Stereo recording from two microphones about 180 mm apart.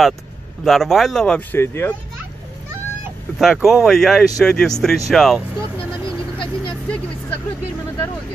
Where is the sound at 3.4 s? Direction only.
Centre (ahead or behind).